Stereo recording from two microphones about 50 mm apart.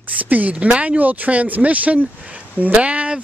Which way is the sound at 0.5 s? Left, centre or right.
Right.